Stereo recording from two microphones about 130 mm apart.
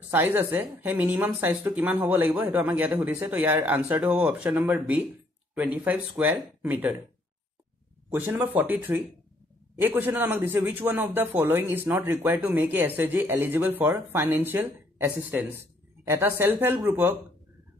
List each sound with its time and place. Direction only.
0.1 s a man's voice: 15° right (ahead or behind)
8.1 s a man's voice: 15° right (ahead or behind)